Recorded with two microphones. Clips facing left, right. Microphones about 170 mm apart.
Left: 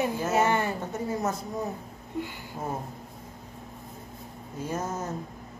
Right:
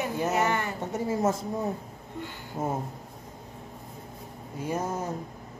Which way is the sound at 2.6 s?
25° right (ahead or behind).